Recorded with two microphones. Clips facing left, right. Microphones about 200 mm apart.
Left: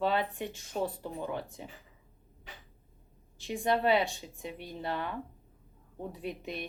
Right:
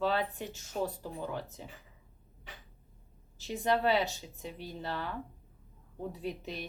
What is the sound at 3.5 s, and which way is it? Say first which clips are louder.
A woman's voice: left 1 dB; 15° left (ahead or behind).